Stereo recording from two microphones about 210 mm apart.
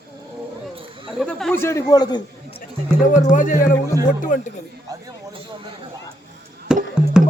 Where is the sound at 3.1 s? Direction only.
40° left (ahead or behind).